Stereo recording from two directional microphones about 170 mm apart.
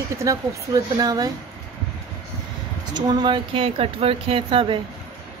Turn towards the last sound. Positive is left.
turn(degrees=-30)  # may be behind; listen again after turning